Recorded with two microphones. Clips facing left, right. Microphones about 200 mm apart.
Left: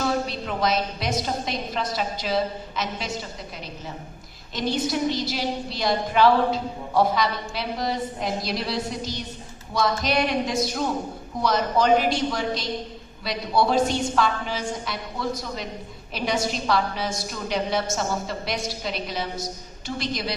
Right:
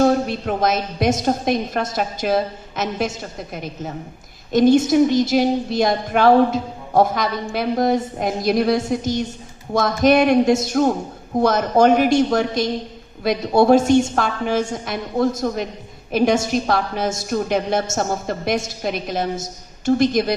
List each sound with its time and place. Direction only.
0.0 s a woman's voice: 50° right (ahead or behind)